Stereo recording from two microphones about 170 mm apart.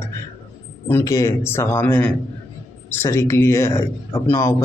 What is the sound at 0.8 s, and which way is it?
A man's voice, 15° left (ahead or behind).